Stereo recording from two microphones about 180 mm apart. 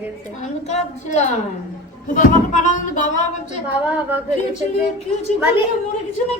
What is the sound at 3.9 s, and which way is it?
Speech, 10° right (ahead or behind).